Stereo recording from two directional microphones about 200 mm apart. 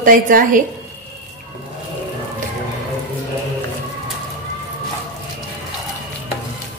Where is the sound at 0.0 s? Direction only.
45° right (ahead or behind).